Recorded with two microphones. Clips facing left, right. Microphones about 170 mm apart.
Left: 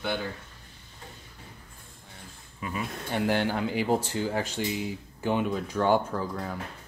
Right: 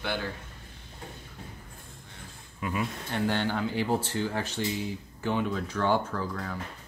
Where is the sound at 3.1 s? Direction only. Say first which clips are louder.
Left 2 dB; 10° left (ahead or behind).